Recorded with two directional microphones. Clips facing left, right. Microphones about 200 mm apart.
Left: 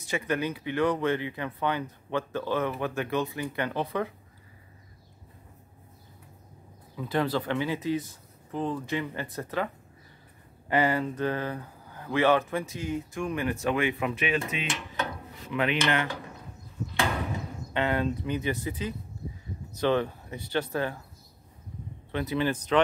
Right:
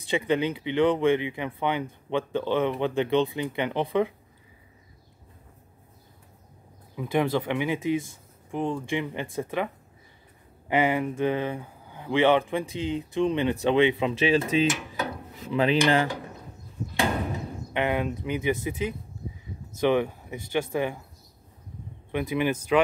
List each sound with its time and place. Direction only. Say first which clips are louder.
0.3 s speech: right 3 dB; 20° right (ahead or behind)
7.0 s speech: right 3 dB; 15° right (ahead or behind)
10.7 s speech: right 2 dB; 20° right (ahead or behind)
17.7 s speech: right 1 dB; 15° right (ahead or behind)
22.1 s speech: right 2 dB; 15° right (ahead or behind)